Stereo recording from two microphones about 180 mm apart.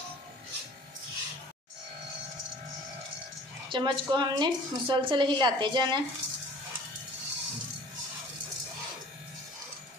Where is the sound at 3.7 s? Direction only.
25° right (ahead or behind).